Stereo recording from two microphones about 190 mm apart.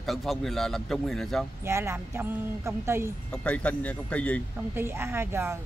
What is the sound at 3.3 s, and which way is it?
Speech, 5° left (ahead or behind).